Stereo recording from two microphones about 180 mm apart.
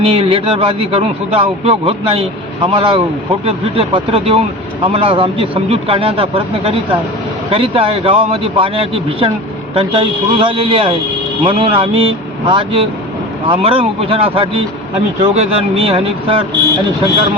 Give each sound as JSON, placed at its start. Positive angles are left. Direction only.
{"t": 0.0, "sound": "a man's voice", "side_deg": -30}